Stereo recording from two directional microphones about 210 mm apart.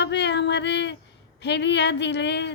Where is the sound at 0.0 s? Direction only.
55° left (ahead or behind).